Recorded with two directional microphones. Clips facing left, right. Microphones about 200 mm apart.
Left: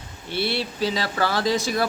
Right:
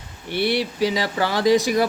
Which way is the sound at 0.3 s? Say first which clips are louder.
Right 4 dB; 15° right (ahead or behind).